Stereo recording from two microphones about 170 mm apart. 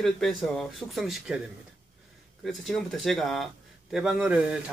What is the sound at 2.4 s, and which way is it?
Speech, centre (ahead or behind).